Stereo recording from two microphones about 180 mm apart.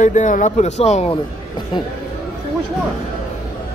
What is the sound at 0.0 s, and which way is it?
Speech, 45° left (ahead or behind).